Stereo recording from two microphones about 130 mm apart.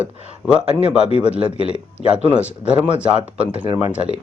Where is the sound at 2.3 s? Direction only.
10° right (ahead or behind).